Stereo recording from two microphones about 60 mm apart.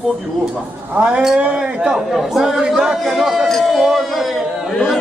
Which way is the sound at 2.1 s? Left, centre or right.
Centre.